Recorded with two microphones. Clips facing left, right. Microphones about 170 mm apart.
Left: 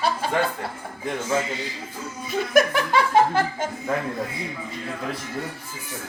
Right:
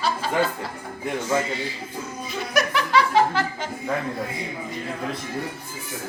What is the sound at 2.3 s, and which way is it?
Speech, 50° left (ahead or behind).